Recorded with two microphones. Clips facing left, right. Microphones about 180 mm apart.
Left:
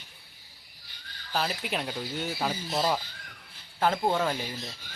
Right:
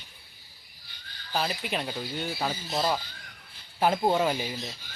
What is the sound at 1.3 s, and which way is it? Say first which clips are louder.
Speech: right 1 dB; centre (ahead or behind).